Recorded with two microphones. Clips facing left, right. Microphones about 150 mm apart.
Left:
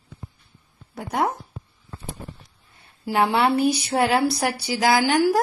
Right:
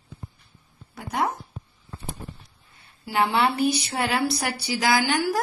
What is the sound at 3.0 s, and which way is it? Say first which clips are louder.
Speech: left 2 dB; 50° left (ahead or behind).